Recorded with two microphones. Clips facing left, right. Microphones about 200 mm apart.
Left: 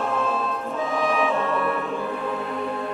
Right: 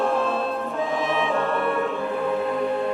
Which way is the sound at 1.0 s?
25° right (ahead or behind).